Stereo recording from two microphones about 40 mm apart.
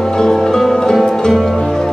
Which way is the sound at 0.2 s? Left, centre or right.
Centre.